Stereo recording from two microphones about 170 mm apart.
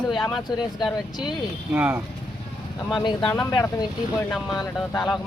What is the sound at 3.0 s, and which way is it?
Speech, 25° left (ahead or behind).